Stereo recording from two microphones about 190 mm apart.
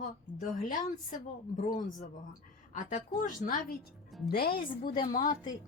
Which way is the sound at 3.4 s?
45° left (ahead or behind).